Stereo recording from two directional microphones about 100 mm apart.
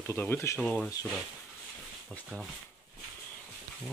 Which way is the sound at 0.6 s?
10° left (ahead or behind).